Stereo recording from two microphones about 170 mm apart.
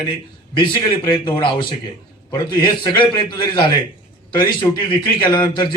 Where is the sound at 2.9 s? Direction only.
30° left (ahead or behind).